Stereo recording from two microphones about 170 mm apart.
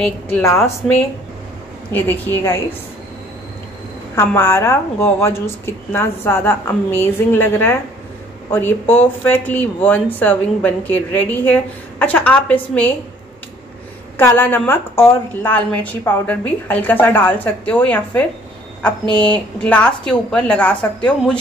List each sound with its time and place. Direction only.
0.0 s speech: 15° left (ahead or behind)
4.1 s speech: 15° left (ahead or behind)
14.1 s speech: 10° left (ahead or behind)